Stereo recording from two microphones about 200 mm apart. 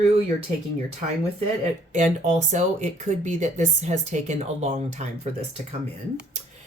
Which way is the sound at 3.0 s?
35° right (ahead or behind).